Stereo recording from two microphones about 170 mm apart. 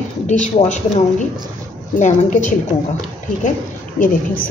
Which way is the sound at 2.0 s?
50° left (ahead or behind).